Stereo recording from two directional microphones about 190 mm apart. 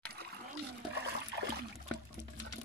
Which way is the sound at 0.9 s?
60° right (ahead or behind).